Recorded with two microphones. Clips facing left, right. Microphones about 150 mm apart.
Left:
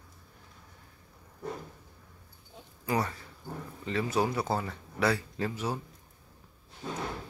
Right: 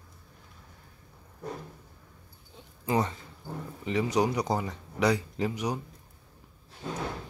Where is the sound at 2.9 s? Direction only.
20° right (ahead or behind).